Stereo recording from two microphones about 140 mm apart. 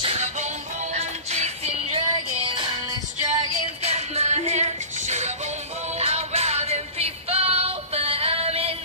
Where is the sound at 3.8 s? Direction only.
50° right (ahead or behind).